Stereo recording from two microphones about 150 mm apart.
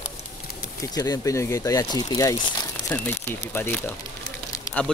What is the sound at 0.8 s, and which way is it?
Speech, 25° left (ahead or behind).